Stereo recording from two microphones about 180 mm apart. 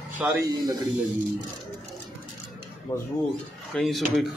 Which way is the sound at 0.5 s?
20° right (ahead or behind).